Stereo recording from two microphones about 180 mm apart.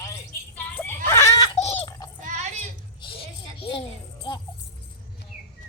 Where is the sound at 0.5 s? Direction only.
10° left (ahead or behind).